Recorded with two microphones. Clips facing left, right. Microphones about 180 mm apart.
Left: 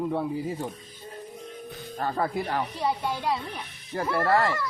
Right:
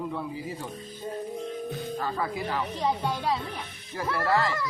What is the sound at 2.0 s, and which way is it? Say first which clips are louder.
Speech: left 6 dB; 50° left (ahead or behind).